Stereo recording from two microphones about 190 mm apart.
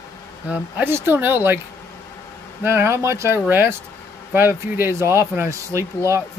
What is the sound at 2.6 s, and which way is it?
Speech, 15° right (ahead or behind).